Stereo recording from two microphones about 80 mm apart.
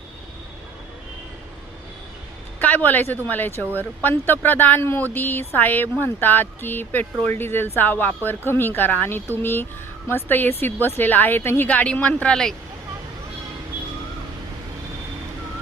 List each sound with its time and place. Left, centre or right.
2.6 s speech: left
3.6 s speech: right
4.0 s speech: left; by 12.5 s centre